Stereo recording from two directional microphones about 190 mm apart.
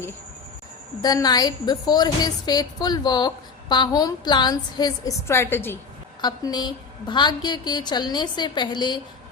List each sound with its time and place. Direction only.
1.0 s a woman's voice: 20° left (ahead or behind)
6.2 s a woman's voice: 20° left (ahead or behind)